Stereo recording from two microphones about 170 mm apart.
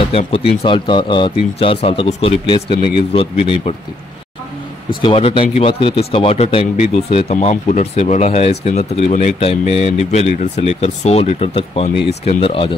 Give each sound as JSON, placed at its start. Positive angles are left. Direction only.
{"t": 0.1, "sound": "speech", "side_deg": 35}
{"t": 5.0, "sound": "speech", "side_deg": 30}